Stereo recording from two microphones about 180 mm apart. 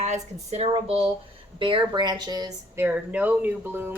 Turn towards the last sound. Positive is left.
turn(degrees=-10)  # may be behind; listen again after turning